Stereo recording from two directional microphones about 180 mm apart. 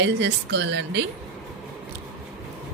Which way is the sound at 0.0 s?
70° right (ahead or behind).